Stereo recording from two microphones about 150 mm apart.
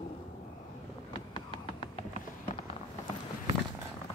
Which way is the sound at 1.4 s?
35° left (ahead or behind).